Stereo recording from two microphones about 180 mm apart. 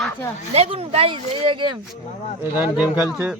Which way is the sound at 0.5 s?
30° right (ahead or behind).